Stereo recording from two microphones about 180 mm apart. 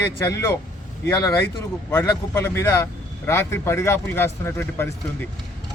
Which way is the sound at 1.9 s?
15° left (ahead or behind).